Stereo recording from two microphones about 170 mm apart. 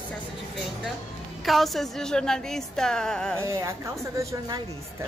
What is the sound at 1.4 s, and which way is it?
Speech, centre (ahead or behind).